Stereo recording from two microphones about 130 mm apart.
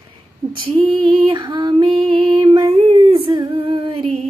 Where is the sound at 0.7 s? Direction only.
40° right (ahead or behind).